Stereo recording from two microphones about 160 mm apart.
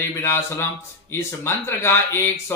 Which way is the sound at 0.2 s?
15° left (ahead or behind).